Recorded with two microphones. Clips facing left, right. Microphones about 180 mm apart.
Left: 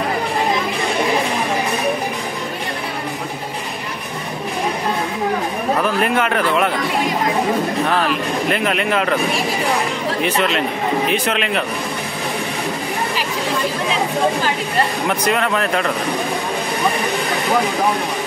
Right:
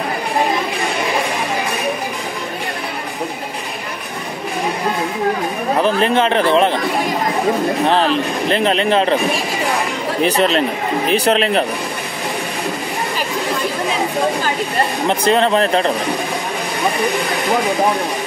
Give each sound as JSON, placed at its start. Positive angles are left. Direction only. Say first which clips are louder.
{"t": 5.8, "sound": "speech", "louder": "right 5 dB", "side_deg": -25}
{"t": 7.8, "sound": "speech", "louder": "right 3 dB", "side_deg": -30}
{"t": 10.2, "sound": "speech", "louder": "right 5 dB", "side_deg": -35}
{"t": 15.0, "sound": "speech", "louder": "right 4 dB", "side_deg": -30}